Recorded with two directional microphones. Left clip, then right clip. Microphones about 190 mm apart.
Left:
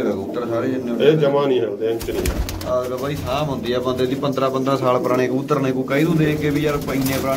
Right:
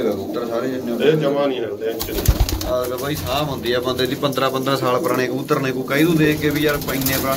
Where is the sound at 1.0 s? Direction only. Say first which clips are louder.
Left 2 dB; 55° left (ahead or behind).